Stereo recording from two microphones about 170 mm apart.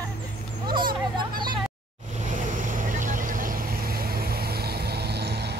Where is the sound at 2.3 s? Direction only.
50° right (ahead or behind); by 5.6 s 75° right (ahead or behind).